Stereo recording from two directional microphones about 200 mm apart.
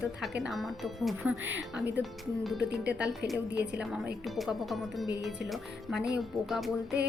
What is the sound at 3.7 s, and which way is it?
Speech, 5° right (ahead or behind).